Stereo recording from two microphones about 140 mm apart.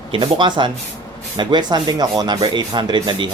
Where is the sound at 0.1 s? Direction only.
35° right (ahead or behind).